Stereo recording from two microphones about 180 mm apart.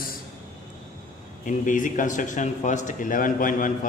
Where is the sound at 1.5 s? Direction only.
45° left (ahead or behind).